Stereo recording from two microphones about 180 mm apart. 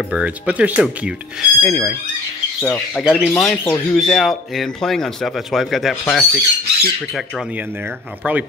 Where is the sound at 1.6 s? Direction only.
15° left (ahead or behind).